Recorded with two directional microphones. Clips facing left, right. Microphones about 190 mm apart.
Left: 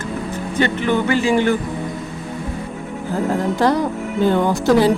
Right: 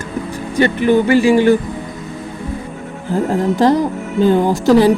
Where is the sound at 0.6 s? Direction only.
10° right (ahead or behind).